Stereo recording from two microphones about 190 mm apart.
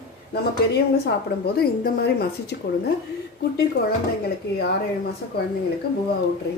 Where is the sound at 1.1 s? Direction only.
55° left (ahead or behind).